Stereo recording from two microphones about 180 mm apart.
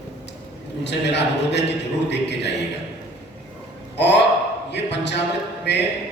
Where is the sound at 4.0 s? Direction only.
70° left (ahead or behind).